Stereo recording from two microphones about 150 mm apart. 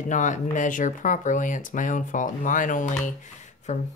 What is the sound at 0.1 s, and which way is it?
Speech, 55° left (ahead or behind).